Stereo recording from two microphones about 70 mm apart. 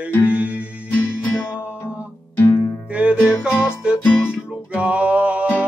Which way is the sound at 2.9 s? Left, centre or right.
Centre.